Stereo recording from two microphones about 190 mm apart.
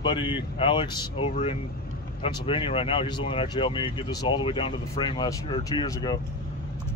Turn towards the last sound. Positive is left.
turn(degrees=20)  # may be behind; listen again after turning